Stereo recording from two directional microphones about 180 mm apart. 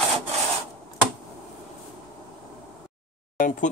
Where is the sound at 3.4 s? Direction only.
45° left (ahead or behind).